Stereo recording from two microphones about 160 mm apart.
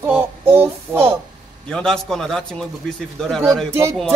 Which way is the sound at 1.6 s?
5° left (ahead or behind).